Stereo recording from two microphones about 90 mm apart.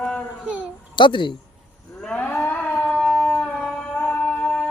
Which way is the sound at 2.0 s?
10° left (ahead or behind).